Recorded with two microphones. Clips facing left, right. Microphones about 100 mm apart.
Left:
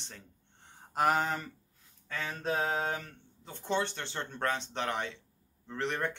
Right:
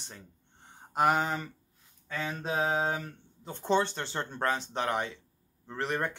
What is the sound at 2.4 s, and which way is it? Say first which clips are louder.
Speech: right 2 dB; 15° right (ahead or behind).